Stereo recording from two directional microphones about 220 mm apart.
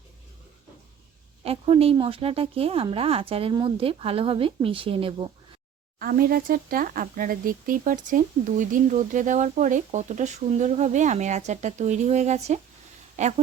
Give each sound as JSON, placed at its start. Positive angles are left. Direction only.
{"t": 1.5, "sound": "a woman's voice", "side_deg": -25}
{"t": 6.0, "sound": "speech", "side_deg": -40}